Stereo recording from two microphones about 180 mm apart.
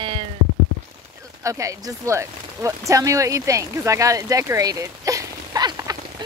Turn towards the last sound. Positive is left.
turn(degrees=-20)  # may be behind; listen again after turning